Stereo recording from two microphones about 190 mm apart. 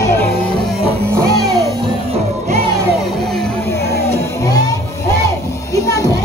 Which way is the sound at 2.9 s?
Centre (ahead or behind).